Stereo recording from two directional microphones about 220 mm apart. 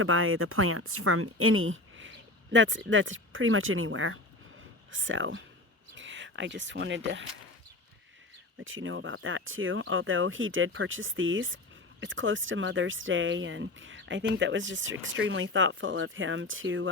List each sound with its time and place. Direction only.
0.0 s speech: 70° right (ahead or behind)
8.5 s speech: 60° right (ahead or behind)